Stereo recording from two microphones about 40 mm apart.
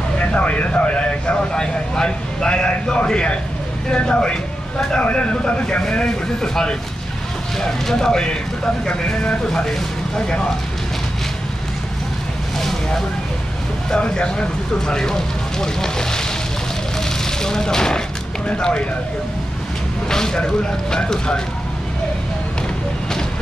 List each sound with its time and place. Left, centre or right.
0.3 s a man's voice: left; by 8.4 s centre
8.8 s a man's voice: left
10.1 s speech: centre
12.5 s vehicle: centre
13.9 s a man's voice: left
20.1 s speech: centre